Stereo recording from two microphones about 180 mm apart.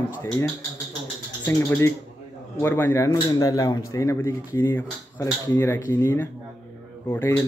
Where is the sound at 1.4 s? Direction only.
15° left (ahead or behind).